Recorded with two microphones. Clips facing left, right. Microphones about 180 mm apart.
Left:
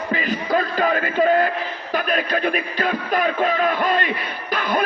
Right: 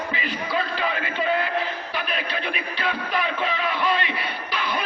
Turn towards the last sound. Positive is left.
turn(degrees=50)  # may be behind; listen again after turning